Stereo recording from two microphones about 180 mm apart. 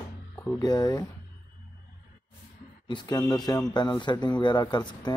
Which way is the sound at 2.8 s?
25° left (ahead or behind).